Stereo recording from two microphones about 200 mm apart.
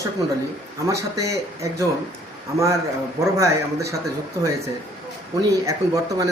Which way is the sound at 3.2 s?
15° right (ahead or behind).